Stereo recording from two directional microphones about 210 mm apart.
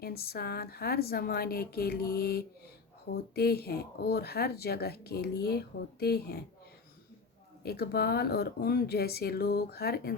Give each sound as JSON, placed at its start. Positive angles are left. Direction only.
{"t": 0.0, "sound": "speech", "side_deg": 45}
{"t": 7.6, "sound": "speech", "side_deg": 50}